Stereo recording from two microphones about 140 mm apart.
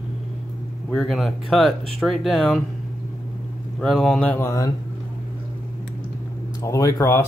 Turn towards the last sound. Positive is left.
turn(degrees=20)  # may be behind; listen again after turning